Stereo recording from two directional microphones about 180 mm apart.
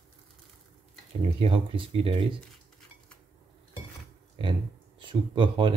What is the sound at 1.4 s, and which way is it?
Speech, 30° right (ahead or behind).